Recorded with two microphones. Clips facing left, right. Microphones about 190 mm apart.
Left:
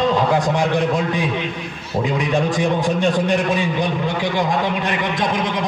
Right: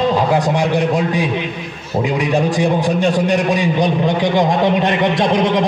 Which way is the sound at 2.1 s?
10° right (ahead or behind).